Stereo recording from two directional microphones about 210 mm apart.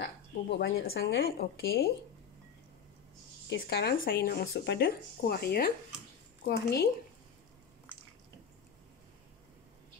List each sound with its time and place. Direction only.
0.0 s speech: 55° left (ahead or behind)
3.4 s speech: 55° left (ahead or behind)